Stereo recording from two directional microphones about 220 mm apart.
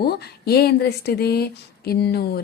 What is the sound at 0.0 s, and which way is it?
Speech, 45° left (ahead or behind).